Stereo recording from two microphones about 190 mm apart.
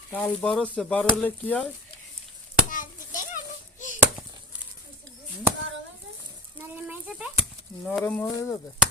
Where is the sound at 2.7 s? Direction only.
45° left (ahead or behind).